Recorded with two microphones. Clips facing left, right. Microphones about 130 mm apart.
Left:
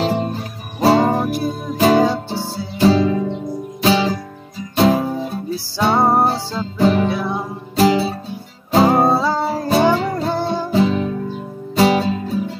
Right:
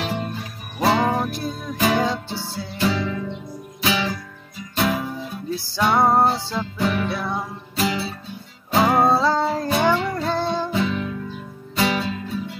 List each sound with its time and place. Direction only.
0.0 s music: 35° left (ahead or behind)
1.3 s music: 10° left (ahead or behind)
1.8 s music: 35° left (ahead or behind)
9.2 s music: 5° left (ahead or behind)
9.7 s music: 30° left (ahead or behind)